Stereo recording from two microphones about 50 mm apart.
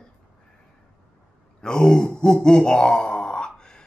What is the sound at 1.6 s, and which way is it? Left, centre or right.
Gasp, centre.